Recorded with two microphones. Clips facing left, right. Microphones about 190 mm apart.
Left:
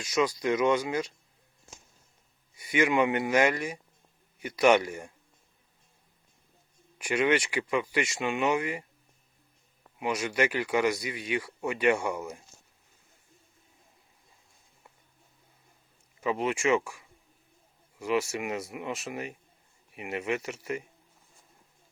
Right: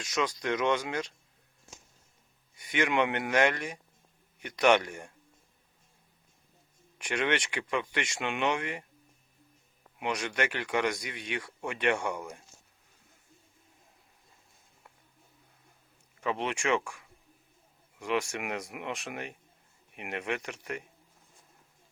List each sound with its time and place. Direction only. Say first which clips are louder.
0.0 s speech: left 4 dB; 5° left (ahead or behind)
2.6 s speech: left 3 dB; 5° left (ahead or behind)
7.0 s speech: left 4 dB; 5° left (ahead or behind)
10.0 s speech: left 3 dB; 5° left (ahead or behind)
16.2 s speech: left 4 dB; 5° left (ahead or behind)